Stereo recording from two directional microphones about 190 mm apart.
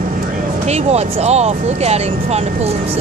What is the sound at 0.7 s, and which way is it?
Speech, 35° right (ahead or behind).